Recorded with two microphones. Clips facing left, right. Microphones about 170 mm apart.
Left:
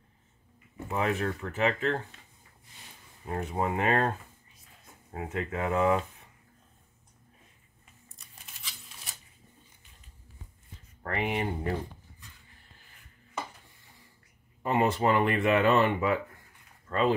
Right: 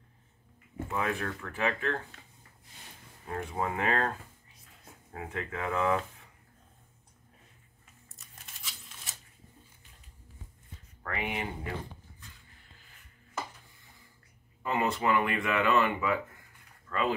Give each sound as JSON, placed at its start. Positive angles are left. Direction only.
{"t": 0.8, "sound": "speech", "side_deg": 25}
{"t": 3.3, "sound": "speech", "side_deg": 25}
{"t": 5.1, "sound": "speech", "side_deg": 25}
{"t": 11.0, "sound": "speech", "side_deg": 35}
{"t": 14.6, "sound": "speech", "side_deg": 35}